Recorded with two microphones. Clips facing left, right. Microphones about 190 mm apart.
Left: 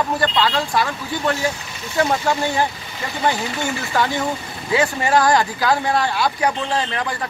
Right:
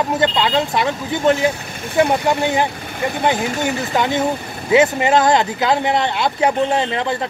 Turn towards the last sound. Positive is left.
turn(degrees=-25)  # may be behind; listen again after turning